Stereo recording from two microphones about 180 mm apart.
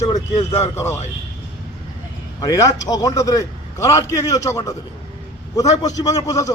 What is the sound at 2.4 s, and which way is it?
A man's voice, 20° left (ahead or behind).